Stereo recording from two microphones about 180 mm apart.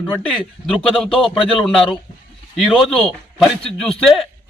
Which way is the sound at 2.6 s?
Centre (ahead or behind).